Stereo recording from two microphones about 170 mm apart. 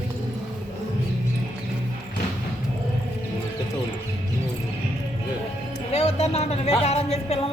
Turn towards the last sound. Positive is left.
turn(degrees=40)  # may be behind; listen again after turning